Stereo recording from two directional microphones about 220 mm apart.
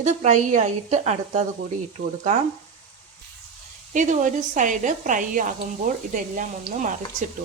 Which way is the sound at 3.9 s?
35° right (ahead or behind).